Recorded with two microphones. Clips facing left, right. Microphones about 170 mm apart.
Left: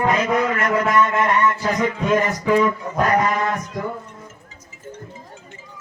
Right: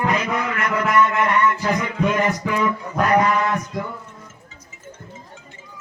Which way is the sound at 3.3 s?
45° left (ahead or behind).